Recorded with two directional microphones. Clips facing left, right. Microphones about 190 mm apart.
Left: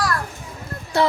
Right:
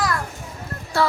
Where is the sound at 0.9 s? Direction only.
20° left (ahead or behind).